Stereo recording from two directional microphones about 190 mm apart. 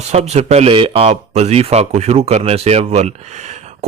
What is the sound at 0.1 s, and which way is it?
A man's voice, 35° right (ahead or behind).